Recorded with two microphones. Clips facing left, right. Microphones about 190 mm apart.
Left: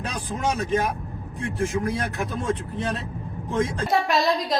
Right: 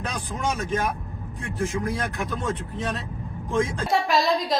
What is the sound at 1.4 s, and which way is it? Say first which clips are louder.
Speech: left 2 dB; 30° left (ahead or behind).